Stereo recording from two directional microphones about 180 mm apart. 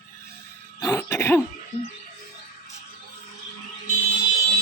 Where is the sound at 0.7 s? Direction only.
15° left (ahead or behind).